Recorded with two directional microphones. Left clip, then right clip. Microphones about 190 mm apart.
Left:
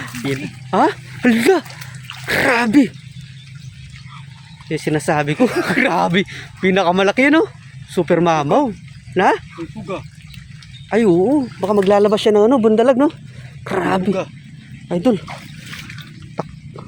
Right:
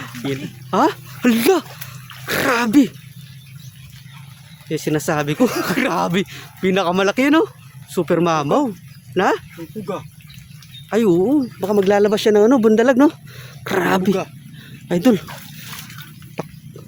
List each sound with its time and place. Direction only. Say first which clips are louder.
0.2 s speech: left 2 dB; 5° right (ahead or behind)
4.7 s speech: left 2 dB; 5° right (ahead or behind)
10.8 s speech: left 2 dB; 5° right (ahead or behind); by 15.2 s 30° right (ahead or behind)
16.4 s a sound: left 3 dB; 15° right (ahead or behind)